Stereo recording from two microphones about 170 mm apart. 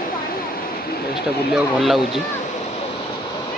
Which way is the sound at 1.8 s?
Centre (ahead or behind).